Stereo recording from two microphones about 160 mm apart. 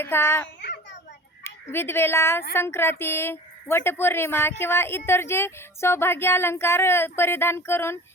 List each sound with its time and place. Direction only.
0.0 s speech: 15° left (ahead or behind)
1.5 s a woman's voice: 15° left (ahead or behind)